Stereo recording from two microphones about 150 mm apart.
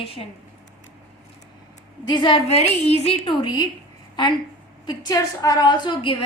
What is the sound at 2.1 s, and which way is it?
A woman's voice, 30° left (ahead or behind).